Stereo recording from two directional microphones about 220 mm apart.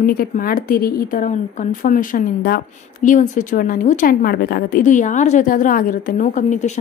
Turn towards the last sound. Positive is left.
turn(degrees=30)  # may be behind; listen again after turning